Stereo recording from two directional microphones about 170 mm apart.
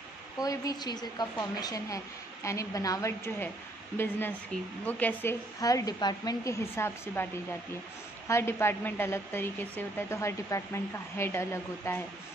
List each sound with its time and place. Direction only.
0.4 s a woman's voice: 20° left (ahead or behind)
5.6 s a woman's voice: 20° left (ahead or behind)
8.3 s a woman's voice: 15° left (ahead or behind)